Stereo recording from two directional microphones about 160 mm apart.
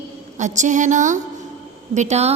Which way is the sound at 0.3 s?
50° right (ahead or behind).